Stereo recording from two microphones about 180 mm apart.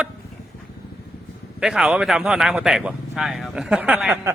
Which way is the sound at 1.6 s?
5° right (ahead or behind).